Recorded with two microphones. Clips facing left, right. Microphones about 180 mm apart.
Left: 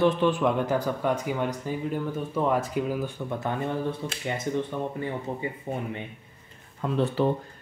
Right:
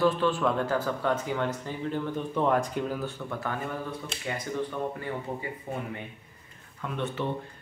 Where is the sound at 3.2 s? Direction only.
20° left (ahead or behind).